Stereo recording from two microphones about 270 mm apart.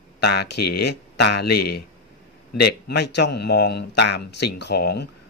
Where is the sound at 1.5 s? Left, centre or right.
Left.